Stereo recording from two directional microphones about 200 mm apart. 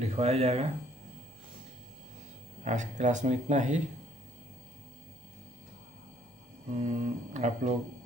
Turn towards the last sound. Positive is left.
turn(degrees=-35)  # may be behind; listen again after turning